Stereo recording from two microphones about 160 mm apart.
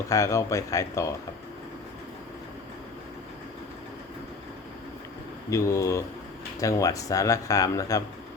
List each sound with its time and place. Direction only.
0.1 s speech: 20° left (ahead or behind)
5.5 s speech: 20° left (ahead or behind)